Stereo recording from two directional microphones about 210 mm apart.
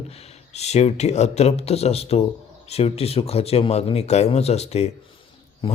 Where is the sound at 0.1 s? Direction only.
30° left (ahead or behind).